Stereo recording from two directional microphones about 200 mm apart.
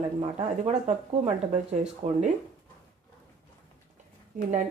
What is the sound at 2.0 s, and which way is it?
Speech, 35° right (ahead or behind).